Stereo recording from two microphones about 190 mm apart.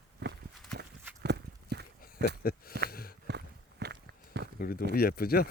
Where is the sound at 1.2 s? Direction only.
60° right (ahead or behind).